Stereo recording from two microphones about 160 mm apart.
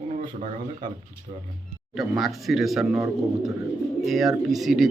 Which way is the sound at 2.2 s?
Centre (ahead or behind).